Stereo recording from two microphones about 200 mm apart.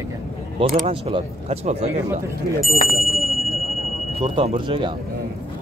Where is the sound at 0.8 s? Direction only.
30° right (ahead or behind).